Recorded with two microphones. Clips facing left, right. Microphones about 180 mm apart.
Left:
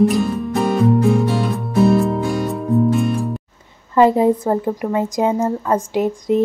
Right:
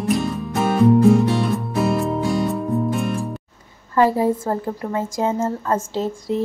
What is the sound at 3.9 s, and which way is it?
A woman's voice, 20° left (ahead or behind).